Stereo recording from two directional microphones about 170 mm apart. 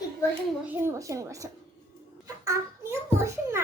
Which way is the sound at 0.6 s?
15° right (ahead or behind).